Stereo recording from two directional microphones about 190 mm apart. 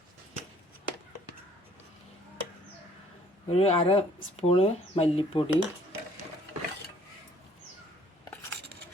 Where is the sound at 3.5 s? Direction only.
35° left (ahead or behind).